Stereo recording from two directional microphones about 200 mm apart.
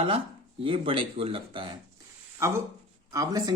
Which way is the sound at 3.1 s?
20° right (ahead or behind).